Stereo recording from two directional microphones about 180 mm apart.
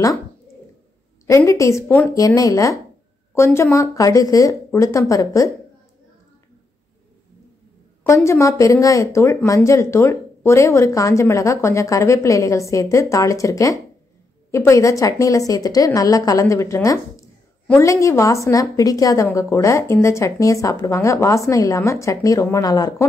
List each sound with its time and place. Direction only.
1.2 s a woman's voice: 15° left (ahead or behind)
8.1 s a woman's voice: 15° left (ahead or behind)